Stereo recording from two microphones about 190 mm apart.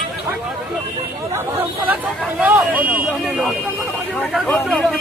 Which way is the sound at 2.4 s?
10° right (ahead or behind).